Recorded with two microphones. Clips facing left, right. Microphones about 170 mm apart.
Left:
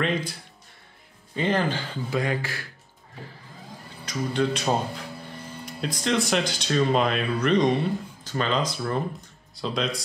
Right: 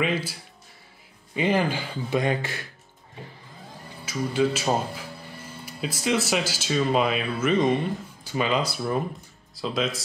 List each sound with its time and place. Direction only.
0.0 s speech: 5° right (ahead or behind)
2.0 s speech: 25° right (ahead or behind)
4.0 s speech: 5° right (ahead or behind)